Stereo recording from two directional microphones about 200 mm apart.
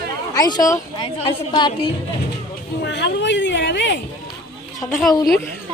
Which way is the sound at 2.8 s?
60° left (ahead or behind).